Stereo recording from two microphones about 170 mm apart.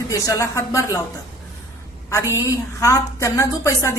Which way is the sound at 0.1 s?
20° left (ahead or behind).